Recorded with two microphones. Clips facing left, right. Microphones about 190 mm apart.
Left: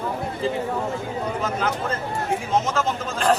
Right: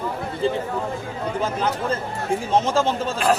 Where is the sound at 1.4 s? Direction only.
30° right (ahead or behind).